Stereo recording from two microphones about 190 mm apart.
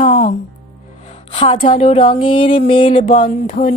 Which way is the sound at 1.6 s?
35° left (ahead or behind).